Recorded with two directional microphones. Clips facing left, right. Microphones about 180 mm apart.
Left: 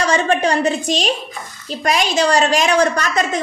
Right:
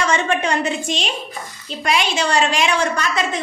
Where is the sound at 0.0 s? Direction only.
35° left (ahead or behind).